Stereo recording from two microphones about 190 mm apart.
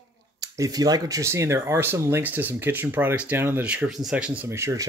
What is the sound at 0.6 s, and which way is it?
Speech, 20° right (ahead or behind).